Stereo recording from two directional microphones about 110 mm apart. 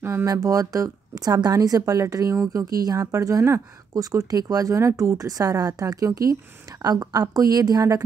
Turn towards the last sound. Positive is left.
turn(degrees=-35)  # may be behind; listen again after turning